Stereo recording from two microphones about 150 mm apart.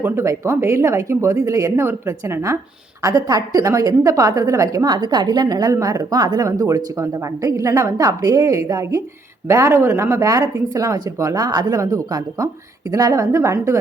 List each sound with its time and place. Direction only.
0.0 s a woman's voice: 15° right (ahead or behind)